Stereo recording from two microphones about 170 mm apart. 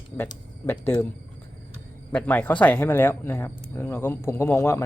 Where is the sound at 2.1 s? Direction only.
10° left (ahead or behind).